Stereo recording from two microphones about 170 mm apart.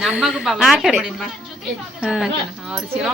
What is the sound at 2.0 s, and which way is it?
Speech, 5° right (ahead or behind).